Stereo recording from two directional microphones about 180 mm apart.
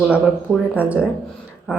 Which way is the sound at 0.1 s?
10° right (ahead or behind).